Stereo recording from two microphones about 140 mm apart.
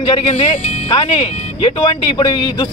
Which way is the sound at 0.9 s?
40° left (ahead or behind).